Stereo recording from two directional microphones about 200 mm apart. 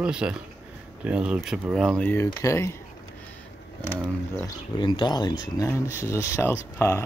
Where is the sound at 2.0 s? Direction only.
10° left (ahead or behind).